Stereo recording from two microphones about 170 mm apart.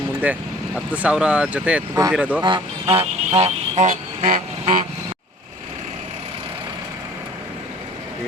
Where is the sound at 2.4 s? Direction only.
25° right (ahead or behind); by 4.4 s 50° right (ahead or behind).